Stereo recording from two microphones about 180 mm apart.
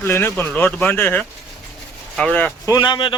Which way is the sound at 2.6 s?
20° left (ahead or behind).